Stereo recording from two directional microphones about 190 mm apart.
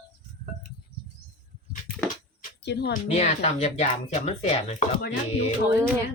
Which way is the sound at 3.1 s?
35° left (ahead or behind).